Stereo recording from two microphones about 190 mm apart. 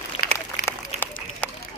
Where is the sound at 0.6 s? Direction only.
10° left (ahead or behind).